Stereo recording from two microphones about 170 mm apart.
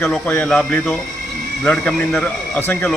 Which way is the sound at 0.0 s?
10° left (ahead or behind).